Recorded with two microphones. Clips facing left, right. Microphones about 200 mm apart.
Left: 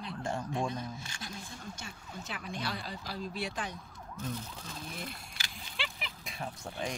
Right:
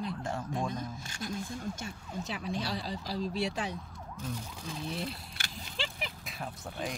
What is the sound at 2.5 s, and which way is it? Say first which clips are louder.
Speech: right 2 dB; 40° right (ahead or behind).